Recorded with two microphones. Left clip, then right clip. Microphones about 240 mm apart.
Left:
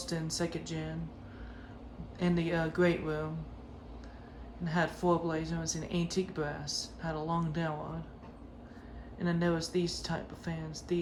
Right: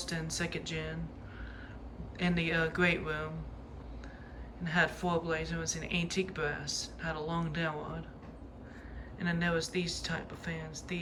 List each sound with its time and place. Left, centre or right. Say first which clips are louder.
0.0 s speech: left 1 dB; centre
2.1 s speech: right 1 dB; centre
4.7 s speech: even; centre
9.1 s speech: even; centre